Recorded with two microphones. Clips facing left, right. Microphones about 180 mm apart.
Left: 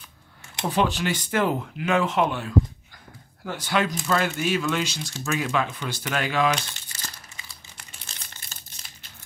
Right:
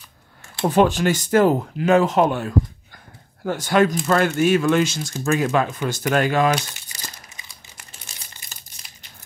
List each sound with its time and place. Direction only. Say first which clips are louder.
0.7 s speech: right 7 dB; 45° right (ahead or behind)
6.7 s crumpling: right 2 dB; 15° right (ahead or behind)